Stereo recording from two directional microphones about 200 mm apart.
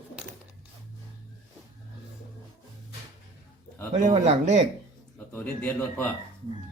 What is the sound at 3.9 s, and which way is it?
Speech, 35° right (ahead or behind).